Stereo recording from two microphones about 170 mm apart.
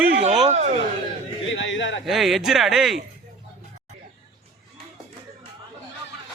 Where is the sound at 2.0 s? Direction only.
Centre (ahead or behind).